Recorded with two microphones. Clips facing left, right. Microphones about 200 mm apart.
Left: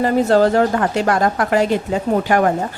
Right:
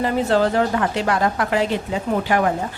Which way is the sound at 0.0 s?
45° left (ahead or behind).